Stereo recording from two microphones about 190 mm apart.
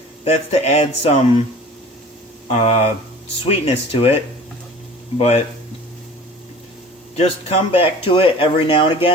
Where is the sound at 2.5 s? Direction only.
30° left (ahead or behind).